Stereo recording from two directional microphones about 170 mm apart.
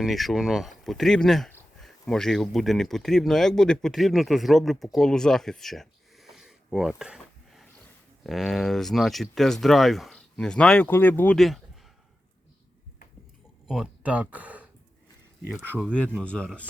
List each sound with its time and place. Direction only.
0.0 s speech: centre (ahead or behind)
13.7 s speech: 5° right (ahead or behind)
15.9 s speech: 5° left (ahead or behind)